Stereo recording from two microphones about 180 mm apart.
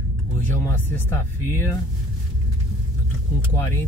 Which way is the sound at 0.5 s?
15° left (ahead or behind).